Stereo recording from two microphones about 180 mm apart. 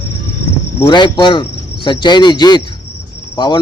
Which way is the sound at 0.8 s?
25° left (ahead or behind).